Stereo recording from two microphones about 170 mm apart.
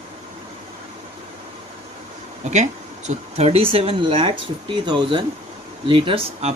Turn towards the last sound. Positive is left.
turn(degrees=-30)  # may be behind; listen again after turning